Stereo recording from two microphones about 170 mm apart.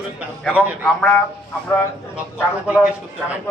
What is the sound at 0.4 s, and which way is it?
Speech, centre (ahead or behind).